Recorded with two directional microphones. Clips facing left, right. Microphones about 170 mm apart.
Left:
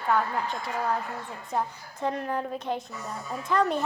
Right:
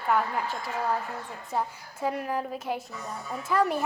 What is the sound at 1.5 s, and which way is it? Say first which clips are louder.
A woman's voice: left 1 dB; 5° right (ahead or behind).